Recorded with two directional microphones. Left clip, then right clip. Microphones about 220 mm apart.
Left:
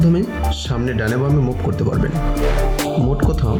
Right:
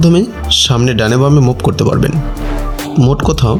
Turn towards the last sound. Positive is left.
turn(degrees=-45)  # may be behind; listen again after turning